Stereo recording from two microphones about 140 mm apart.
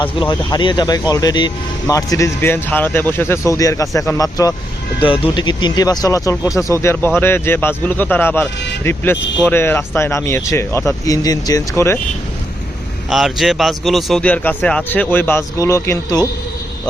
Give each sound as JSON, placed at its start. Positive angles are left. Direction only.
{"t": 0.0, "sound": "speech", "side_deg": 35}
{"t": 5.0, "sound": "speech", "side_deg": 40}
{"t": 13.1, "sound": "speech", "side_deg": 0}